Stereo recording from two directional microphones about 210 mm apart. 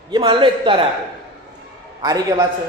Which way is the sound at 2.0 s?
20° right (ahead or behind).